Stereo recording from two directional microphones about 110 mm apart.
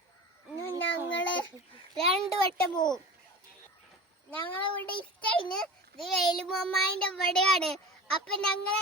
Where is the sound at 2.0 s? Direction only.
65° right (ahead or behind).